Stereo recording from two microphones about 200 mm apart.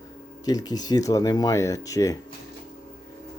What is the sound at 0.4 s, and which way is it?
Speech, 20° left (ahead or behind).